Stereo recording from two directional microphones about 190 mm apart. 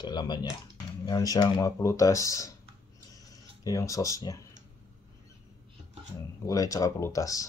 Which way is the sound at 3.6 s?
20° left (ahead or behind).